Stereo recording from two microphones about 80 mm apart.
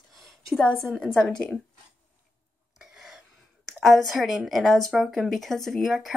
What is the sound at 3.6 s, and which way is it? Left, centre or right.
Speech, centre.